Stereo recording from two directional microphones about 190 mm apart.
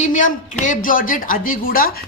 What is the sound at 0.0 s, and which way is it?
A woman's voice, 40° left (ahead or behind).